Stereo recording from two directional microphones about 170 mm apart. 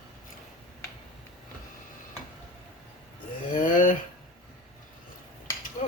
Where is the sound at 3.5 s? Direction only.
50° left (ahead or behind).